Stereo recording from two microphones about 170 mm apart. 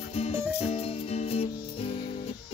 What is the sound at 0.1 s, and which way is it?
Music, 35° left (ahead or behind).